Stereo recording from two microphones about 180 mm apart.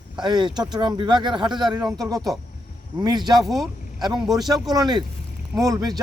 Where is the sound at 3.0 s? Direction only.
25° right (ahead or behind).